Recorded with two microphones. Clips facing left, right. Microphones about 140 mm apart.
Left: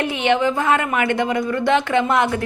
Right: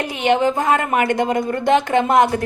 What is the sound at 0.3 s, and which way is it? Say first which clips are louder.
A woman's voice: right 2 dB; 45° right (ahead or behind).